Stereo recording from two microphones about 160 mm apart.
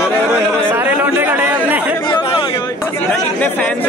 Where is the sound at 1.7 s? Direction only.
10° right (ahead or behind).